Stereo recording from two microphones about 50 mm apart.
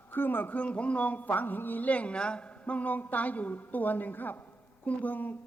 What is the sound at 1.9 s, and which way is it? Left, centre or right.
Speech, left.